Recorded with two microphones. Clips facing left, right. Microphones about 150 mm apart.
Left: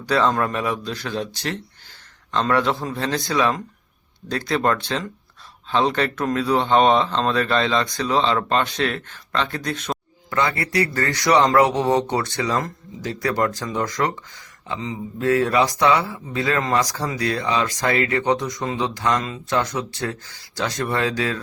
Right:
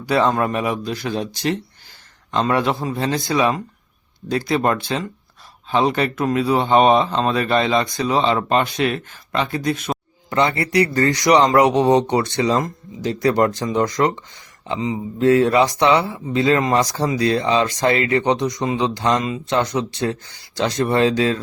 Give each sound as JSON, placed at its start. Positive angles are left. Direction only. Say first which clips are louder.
{"t": 0.0, "sound": "speech", "louder": "right 2 dB", "side_deg": -10}
{"t": 10.2, "sound": "a man's voice", "louder": "right 4 dB", "side_deg": -20}